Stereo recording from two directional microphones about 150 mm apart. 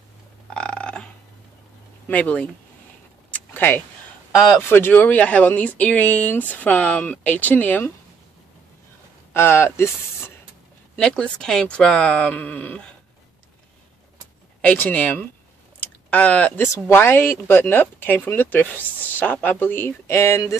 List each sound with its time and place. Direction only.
0.6 s burping: 5° left (ahead or behind)
2.0 s speech: 10° left (ahead or behind)
3.3 s a sound: 10° left (ahead or behind)
4.6 s speech: 15° left (ahead or behind)
9.3 s speech: 15° left (ahead or behind)
14.6 s speech: 10° left (ahead or behind)